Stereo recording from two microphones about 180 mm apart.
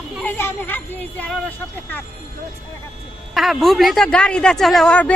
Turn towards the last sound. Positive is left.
turn(degrees=5)  # may be behind; listen again after turning